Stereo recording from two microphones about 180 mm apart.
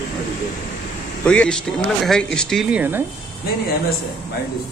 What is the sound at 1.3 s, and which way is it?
A man's voice, 5° left (ahead or behind).